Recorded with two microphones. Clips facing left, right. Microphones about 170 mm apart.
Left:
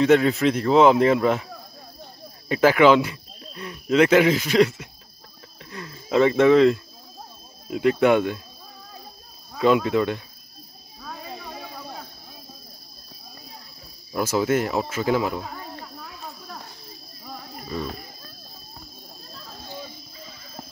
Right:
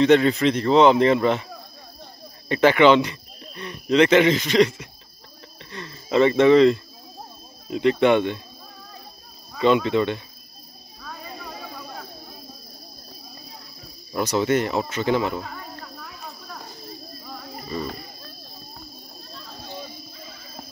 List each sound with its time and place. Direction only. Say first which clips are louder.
0.0 s speech: right 1 dB; 5° left (ahead or behind)
9.6 s speech: even; centre (ahead or behind)
11.0 s a sound: left 1 dB; 20° left (ahead or behind)
14.1 s speech: right 1 dB; 5° left (ahead or behind)
15.5 s snake: left 1 dB; 15° left (ahead or behind)
17.3 s a sound: even; centre (ahead or behind)